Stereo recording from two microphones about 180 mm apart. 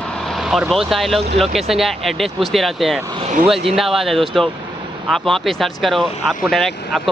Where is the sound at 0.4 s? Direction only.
Centre (ahead or behind).